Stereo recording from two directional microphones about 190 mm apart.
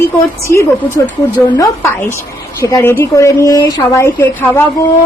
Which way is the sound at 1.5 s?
20° left (ahead or behind).